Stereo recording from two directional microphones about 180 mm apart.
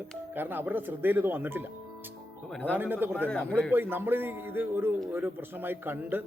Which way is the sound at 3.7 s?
10° right (ahead or behind).